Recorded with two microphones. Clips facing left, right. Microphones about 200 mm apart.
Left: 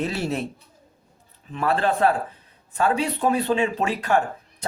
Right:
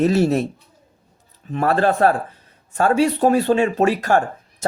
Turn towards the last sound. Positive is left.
turn(degrees=-45)  # may be behind; listen again after turning